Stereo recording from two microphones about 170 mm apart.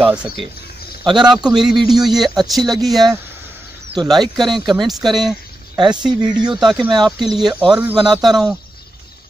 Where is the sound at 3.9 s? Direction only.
25° right (ahead or behind).